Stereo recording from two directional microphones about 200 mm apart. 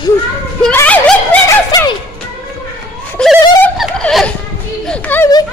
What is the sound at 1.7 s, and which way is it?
Music, 20° left (ahead or behind).